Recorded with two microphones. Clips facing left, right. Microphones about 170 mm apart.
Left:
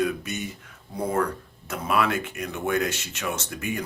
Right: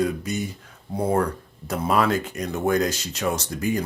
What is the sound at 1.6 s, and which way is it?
Speech, 35° right (ahead or behind).